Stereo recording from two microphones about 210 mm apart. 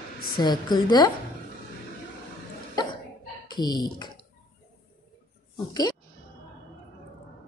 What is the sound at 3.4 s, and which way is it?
Speech, 20° left (ahead or behind).